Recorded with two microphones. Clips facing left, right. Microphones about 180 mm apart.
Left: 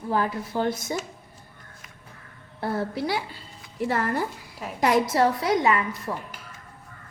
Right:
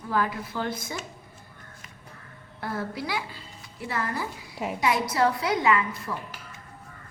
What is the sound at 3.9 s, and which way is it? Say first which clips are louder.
A woman's voice: left 4 dB; 45° left (ahead or behind).